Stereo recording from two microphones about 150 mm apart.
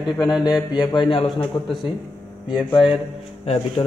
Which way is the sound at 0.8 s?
30° left (ahead or behind).